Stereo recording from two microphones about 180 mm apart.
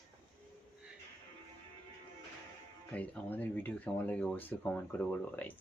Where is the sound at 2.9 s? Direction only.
10° left (ahead or behind).